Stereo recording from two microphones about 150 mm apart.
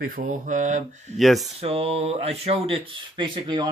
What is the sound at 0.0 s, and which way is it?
Mantra, 70° right (ahead or behind).